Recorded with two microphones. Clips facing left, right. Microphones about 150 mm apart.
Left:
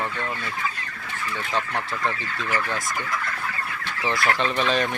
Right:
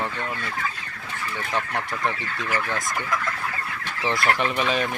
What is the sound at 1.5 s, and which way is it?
Speech, 15° right (ahead or behind).